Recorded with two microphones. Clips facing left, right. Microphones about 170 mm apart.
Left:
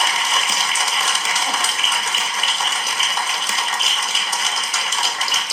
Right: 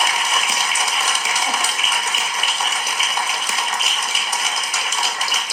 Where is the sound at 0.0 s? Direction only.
5° right (ahead or behind).